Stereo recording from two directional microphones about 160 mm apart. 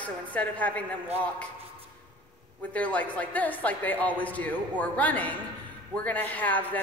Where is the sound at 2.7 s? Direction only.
10° left (ahead or behind).